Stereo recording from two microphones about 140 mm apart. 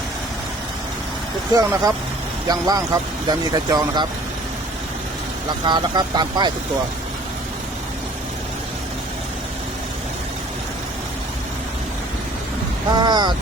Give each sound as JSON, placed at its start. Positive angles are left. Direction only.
{"t": 1.5, "sound": "speech", "side_deg": -25}
{"t": 5.6, "sound": "speech", "side_deg": -30}
{"t": 13.0, "sound": "speech", "side_deg": -30}